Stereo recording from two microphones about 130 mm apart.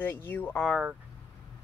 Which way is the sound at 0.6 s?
Centre (ahead or behind).